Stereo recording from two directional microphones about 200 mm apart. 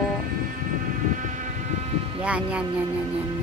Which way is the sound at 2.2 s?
5° right (ahead or behind).